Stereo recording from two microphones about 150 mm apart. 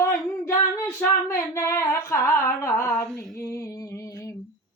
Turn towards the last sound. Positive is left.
turn(degrees=20)  # may be behind; listen again after turning